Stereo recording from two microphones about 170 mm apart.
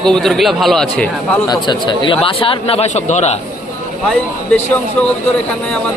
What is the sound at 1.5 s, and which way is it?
Speech, 25° left (ahead or behind).